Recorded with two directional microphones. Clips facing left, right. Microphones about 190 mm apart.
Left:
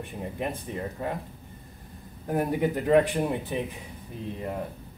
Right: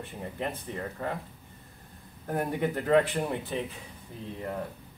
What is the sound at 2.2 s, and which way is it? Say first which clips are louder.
Speech: left 3 dB; 10° left (ahead or behind).